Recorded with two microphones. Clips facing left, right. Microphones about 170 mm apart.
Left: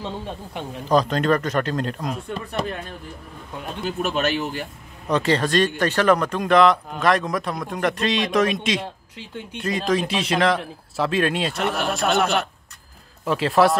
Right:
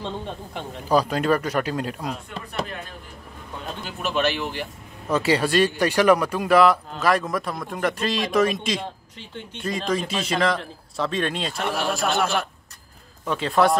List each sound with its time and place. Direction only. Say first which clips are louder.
0.8 s speech: left 1 dB; 10° right (ahead or behind)
3.8 s speech: left 1 dB; 50° left (ahead or behind)
5.0 s a man's voice: left 1 dB; 5° right (ahead or behind)